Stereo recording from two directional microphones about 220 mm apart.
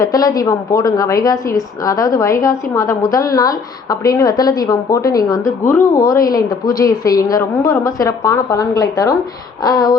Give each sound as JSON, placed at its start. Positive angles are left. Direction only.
{"t": 0.0, "sound": "a woman's voice", "side_deg": 15}